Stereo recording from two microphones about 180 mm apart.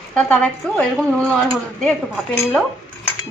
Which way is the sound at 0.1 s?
5° left (ahead or behind).